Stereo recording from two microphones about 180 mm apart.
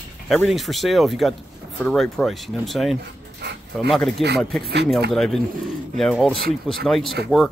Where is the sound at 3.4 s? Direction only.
65° right (ahead or behind).